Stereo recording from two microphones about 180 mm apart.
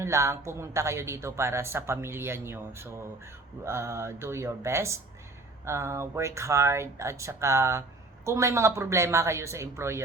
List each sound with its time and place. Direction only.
0.0 s speech: 15° right (ahead or behind)